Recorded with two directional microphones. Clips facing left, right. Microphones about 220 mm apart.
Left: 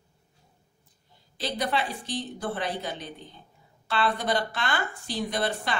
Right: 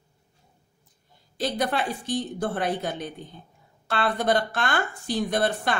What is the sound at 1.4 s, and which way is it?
Speech, 50° right (ahead or behind).